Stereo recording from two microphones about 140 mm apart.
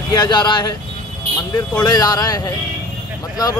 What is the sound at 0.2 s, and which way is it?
Speech, 30° left (ahead or behind).